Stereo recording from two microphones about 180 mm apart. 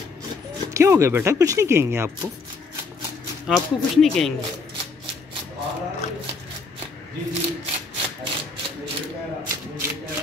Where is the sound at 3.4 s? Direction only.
Centre (ahead or behind).